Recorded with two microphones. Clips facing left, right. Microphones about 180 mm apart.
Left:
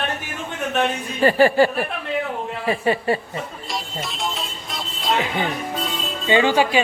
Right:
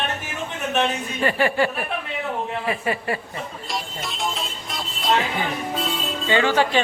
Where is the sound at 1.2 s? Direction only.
35° left (ahead or behind).